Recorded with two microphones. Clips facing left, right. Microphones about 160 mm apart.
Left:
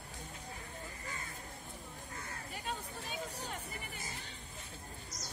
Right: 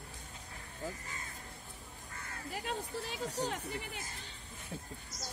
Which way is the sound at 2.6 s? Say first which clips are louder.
Right 4 dB; 80° right.